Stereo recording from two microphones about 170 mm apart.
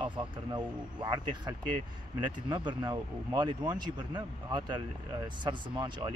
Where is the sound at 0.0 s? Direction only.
30° right (ahead or behind).